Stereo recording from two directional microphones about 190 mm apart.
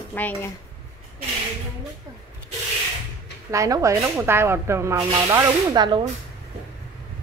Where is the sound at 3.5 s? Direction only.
15° right (ahead or behind).